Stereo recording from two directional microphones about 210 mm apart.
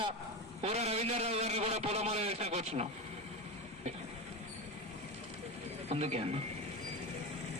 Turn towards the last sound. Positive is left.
turn(degrees=-30)  # may be behind; listen again after turning